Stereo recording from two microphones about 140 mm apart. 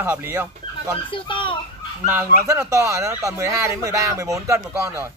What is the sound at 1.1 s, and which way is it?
Speech, 35° left (ahead or behind).